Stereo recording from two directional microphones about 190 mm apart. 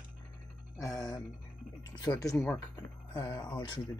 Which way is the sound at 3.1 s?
20° left (ahead or behind).